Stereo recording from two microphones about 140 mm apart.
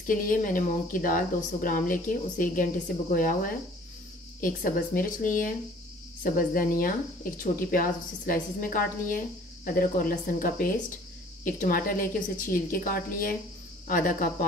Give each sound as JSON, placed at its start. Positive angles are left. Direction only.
{"t": 0.0, "sound": "speech", "side_deg": 75}
{"t": 4.4, "sound": "a woman's voice", "side_deg": 80}